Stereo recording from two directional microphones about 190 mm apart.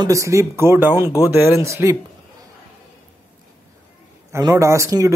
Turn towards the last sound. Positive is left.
turn(degrees=-15)  # may be behind; listen again after turning